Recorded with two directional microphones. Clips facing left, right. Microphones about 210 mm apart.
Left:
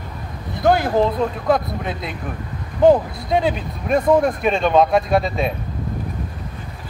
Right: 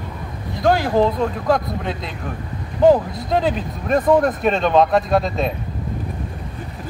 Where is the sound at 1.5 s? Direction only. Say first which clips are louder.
Left 1 dB; 5° left (ahead or behind).